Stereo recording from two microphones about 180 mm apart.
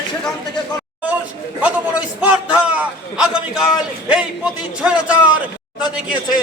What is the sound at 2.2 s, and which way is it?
A man's voice, 5° right (ahead or behind).